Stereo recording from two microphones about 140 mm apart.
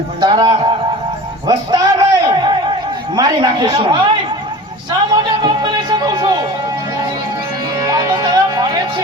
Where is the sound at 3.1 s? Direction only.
30° right (ahead or behind).